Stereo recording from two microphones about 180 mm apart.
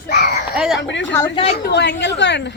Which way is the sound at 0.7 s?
90° left.